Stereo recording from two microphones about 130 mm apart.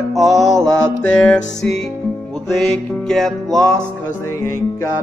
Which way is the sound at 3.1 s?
Centre (ahead or behind).